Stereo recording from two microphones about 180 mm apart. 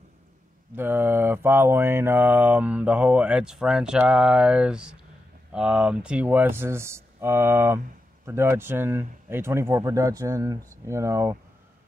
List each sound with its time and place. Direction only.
0.7 s mantra: 10° right (ahead or behind)